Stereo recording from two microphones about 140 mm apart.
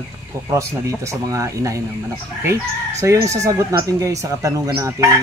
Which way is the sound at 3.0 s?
20° right (ahead or behind).